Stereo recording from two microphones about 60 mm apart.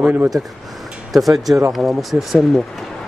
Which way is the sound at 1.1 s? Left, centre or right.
Centre.